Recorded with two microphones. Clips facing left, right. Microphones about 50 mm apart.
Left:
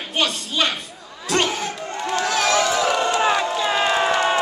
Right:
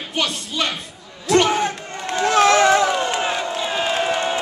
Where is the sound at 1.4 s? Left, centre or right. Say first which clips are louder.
Right 6 dB; right.